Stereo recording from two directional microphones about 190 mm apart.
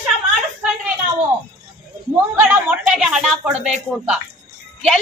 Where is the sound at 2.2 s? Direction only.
10° right (ahead or behind).